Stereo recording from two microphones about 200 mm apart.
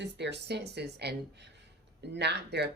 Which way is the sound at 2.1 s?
60° right (ahead or behind).